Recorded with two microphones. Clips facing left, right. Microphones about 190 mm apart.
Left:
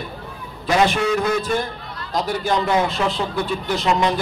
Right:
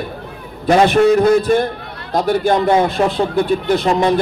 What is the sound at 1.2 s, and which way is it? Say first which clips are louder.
A man's voice: right 9 dB; 55° right (ahead or behind).